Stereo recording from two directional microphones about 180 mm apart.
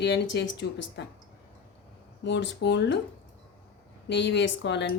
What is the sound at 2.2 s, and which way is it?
Speech, 80° left.